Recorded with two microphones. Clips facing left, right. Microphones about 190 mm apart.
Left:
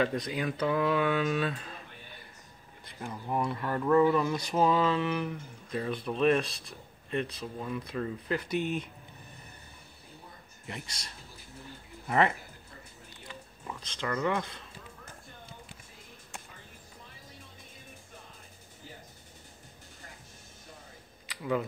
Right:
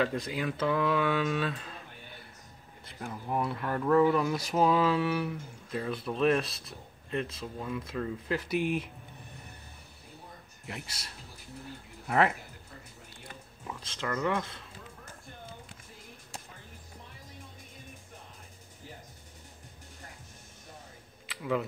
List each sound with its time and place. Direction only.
0.0 s speech: 5° right (ahead or behind)
3.0 s speech: centre (ahead or behind)
10.9 s speech: 5° right (ahead or behind)
13.7 s speech: 5° right (ahead or behind)
21.3 s speech: centre (ahead or behind)